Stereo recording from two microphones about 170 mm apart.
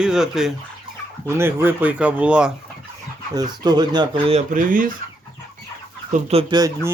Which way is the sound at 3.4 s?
25° right (ahead or behind).